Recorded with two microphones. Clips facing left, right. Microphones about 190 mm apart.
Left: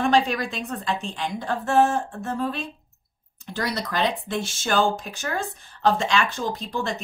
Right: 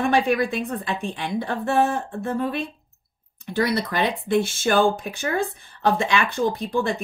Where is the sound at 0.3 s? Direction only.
55° right (ahead or behind).